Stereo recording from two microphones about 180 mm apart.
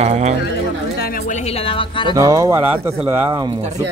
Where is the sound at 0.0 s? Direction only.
35° right (ahead or behind).